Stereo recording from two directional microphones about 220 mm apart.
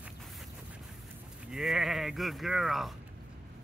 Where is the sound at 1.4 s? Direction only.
Centre (ahead or behind).